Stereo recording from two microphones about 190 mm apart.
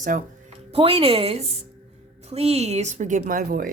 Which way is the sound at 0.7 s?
30° right (ahead or behind).